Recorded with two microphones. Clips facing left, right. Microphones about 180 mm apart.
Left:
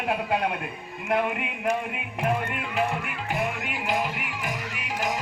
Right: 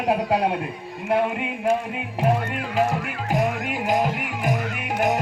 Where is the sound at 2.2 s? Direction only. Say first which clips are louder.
Right 4 dB; 35° right (ahead or behind).